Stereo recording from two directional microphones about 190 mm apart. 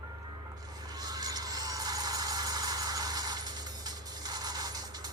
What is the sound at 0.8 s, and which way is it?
Vehicle, 20° right (ahead or behind).